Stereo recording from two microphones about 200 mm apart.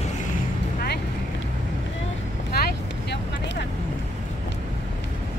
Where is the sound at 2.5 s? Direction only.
50° left (ahead or behind).